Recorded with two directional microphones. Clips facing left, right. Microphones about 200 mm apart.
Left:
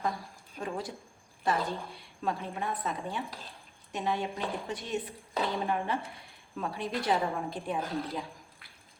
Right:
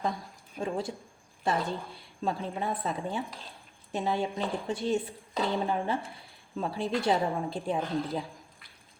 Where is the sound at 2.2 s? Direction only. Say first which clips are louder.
Right 2 dB; 30° right (ahead or behind).